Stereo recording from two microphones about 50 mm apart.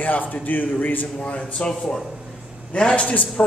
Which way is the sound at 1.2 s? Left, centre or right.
Left.